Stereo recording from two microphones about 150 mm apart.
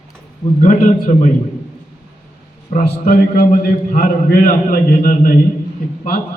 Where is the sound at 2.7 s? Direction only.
65° left (ahead or behind).